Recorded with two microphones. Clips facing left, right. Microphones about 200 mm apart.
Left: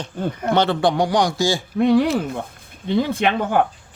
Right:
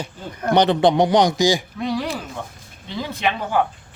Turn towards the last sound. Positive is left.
turn(degrees=55)  # may be behind; listen again after turning